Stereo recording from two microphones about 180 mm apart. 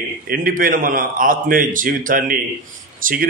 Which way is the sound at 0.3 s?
50° right (ahead or behind).